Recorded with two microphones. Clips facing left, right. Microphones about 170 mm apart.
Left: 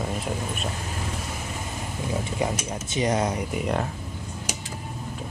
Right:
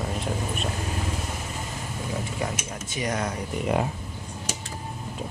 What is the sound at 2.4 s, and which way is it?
Speech, 25° left (ahead or behind).